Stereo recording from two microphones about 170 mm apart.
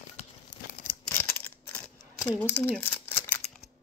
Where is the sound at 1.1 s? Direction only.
10° left (ahead or behind).